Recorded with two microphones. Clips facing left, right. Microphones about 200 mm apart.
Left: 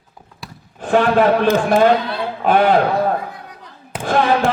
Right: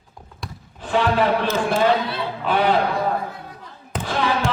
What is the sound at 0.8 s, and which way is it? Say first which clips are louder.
Speech: left 5 dB; 50° left (ahead or behind).